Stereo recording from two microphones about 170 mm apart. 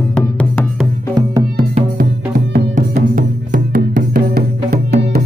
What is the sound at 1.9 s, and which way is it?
Music, 60° right (ahead or behind).